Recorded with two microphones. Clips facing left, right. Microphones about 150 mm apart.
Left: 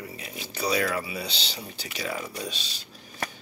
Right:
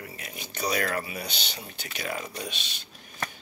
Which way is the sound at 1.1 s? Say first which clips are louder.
Left 2 dB; 30° left (ahead or behind).